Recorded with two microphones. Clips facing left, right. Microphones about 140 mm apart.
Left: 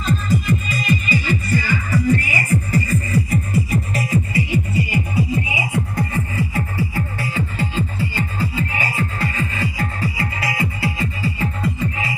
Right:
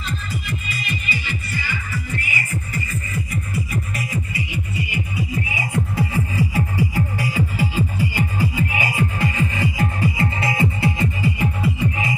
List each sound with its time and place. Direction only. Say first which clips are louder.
0.0 s music: left 9 dB; 45° left (ahead or behind)
5.4 s music: left 2 dB; 15° left (ahead or behind)
5.9 s music: right 1 dB; 15° right (ahead or behind)